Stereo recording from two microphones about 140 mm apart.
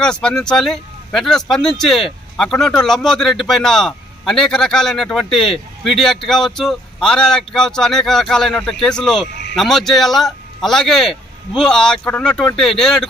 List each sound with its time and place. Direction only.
0.0 s speech: 5° left (ahead or behind)